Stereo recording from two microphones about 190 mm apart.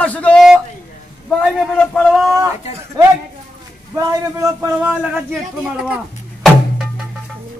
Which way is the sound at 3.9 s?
15° right (ahead or behind).